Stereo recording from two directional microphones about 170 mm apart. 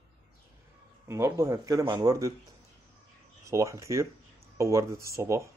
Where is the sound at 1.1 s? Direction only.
15° right (ahead or behind).